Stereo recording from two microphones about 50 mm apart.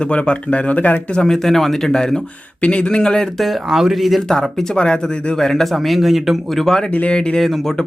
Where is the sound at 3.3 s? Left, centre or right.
Centre.